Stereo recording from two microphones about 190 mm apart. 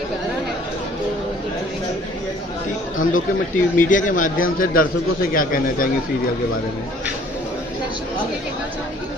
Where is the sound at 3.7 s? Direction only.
45° left (ahead or behind).